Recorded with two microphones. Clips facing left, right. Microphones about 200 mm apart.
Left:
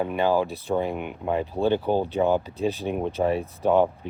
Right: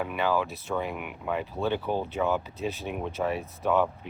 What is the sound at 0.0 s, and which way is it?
Speech, 30° left (ahead or behind).